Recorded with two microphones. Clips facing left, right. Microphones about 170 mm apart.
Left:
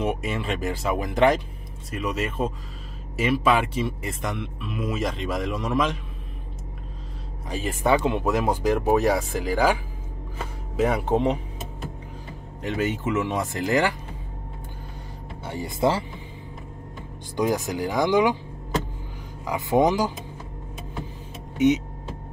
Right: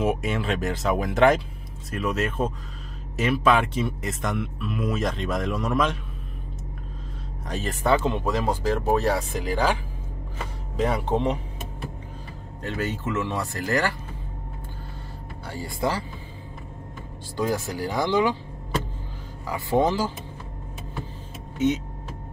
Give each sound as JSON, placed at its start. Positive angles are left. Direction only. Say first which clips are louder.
{"t": 0.0, "sound": "a man's voice", "louder": "right 2 dB", "side_deg": 0}
{"t": 7.4, "sound": "speech", "louder": "left 1 dB", "side_deg": 5}
{"t": 10.8, "sound": "a man's voice", "louder": "left 2 dB", "side_deg": 5}
{"t": 12.6, "sound": "speech", "louder": "left 3 dB", "side_deg": 15}
{"t": 15.4, "sound": "speech", "louder": "left 4 dB", "side_deg": 20}
{"t": 17.4, "sound": "speech", "louder": "left 2 dB", "side_deg": 20}
{"t": 19.4, "sound": "speech", "louder": "left 2 dB", "side_deg": 15}
{"t": 21.5, "sound": "speech", "louder": "left 4 dB", "side_deg": 15}